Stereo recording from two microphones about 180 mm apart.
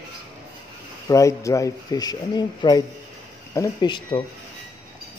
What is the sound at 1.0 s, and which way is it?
Speech, 15° left (ahead or behind).